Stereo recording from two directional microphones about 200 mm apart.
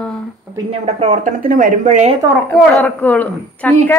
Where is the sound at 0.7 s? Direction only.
30° right (ahead or behind).